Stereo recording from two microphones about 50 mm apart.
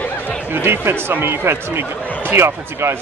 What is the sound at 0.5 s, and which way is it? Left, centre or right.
Speech, right.